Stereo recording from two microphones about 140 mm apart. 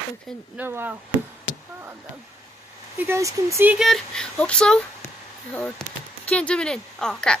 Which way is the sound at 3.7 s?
Centre (ahead or behind).